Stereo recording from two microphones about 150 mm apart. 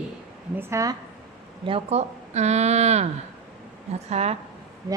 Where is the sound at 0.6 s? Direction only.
20° right (ahead or behind).